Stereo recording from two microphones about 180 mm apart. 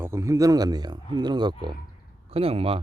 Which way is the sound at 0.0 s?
15° right (ahead or behind).